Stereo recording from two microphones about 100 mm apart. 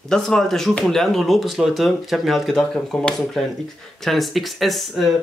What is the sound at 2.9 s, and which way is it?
Speech, 10° left (ahead or behind).